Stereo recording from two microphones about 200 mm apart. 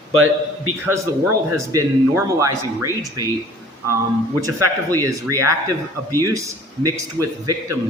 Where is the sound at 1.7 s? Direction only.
15° right (ahead or behind).